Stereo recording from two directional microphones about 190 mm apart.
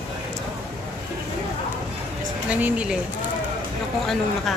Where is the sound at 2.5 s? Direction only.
5° right (ahead or behind).